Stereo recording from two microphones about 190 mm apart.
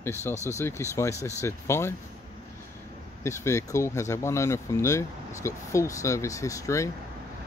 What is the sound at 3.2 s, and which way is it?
Speech, 15° left (ahead or behind).